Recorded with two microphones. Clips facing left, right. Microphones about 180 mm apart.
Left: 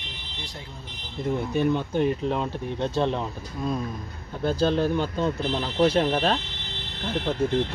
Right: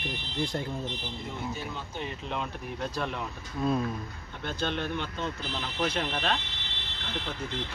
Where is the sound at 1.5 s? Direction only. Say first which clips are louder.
Left 13 dB; 60° left (ahead or behind).